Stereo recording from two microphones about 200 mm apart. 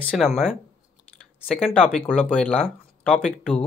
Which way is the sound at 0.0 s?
5° left (ahead or behind).